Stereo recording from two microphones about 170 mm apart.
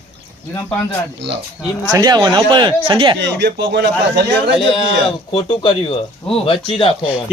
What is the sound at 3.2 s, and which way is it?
Speech, 90° right.